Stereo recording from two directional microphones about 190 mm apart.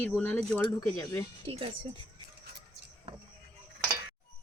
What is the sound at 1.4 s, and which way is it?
Speech, 30° right (ahead or behind).